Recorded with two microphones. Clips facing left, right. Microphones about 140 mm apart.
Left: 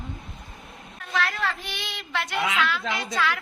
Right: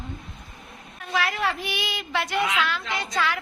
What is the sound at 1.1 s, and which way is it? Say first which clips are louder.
A woman's voice: right 2 dB; 10° right (ahead or behind).